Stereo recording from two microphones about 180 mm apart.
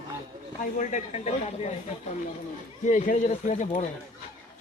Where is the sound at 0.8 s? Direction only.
40° left (ahead or behind).